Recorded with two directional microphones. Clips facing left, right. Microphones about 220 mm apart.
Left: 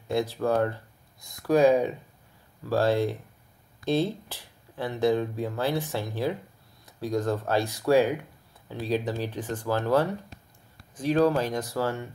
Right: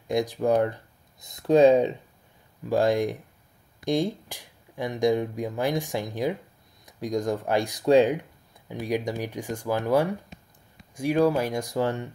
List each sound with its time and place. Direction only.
0.1 s speech: 15° right (ahead or behind)